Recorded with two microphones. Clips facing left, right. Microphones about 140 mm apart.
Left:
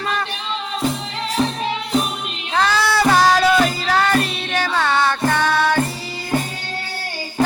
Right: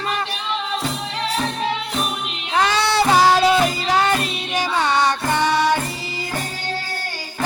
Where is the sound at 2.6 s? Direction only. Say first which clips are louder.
Left 1 dB; 20° right (ahead or behind).